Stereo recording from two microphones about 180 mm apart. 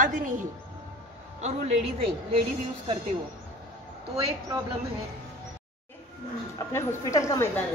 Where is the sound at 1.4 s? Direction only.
35° right (ahead or behind).